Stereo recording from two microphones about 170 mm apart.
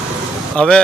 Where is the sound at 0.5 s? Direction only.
5° left (ahead or behind).